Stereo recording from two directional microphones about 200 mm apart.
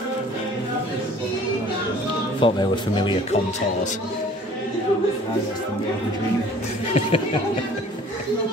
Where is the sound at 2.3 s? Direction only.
25° left (ahead or behind).